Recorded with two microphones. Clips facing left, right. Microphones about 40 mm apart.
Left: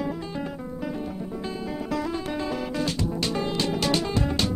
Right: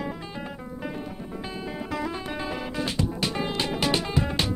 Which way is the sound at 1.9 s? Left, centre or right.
Centre.